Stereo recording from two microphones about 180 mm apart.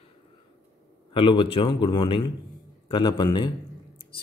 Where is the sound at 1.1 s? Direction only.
30° left (ahead or behind).